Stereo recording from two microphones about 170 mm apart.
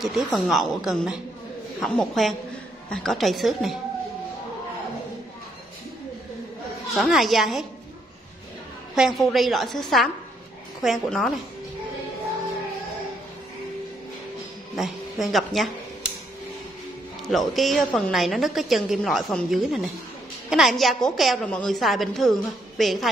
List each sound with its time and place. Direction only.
0.0 s a woman's voice: centre (ahead or behind)
7.0 s a woman's voice: centre (ahead or behind)
8.9 s a woman's voice: centre (ahead or behind)
14.8 s a woman's voice: centre (ahead or behind)
17.3 s a woman's voice: centre (ahead or behind)